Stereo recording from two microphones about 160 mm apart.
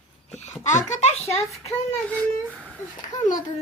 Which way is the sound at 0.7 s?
45° left (ahead or behind).